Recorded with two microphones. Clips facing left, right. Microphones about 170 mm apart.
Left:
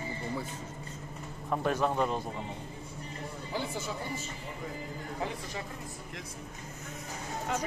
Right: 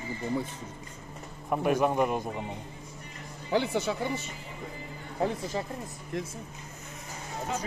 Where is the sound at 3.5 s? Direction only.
70° right (ahead or behind).